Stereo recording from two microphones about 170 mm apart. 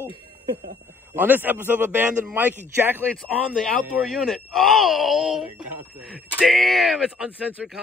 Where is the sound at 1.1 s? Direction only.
10° right (ahead or behind).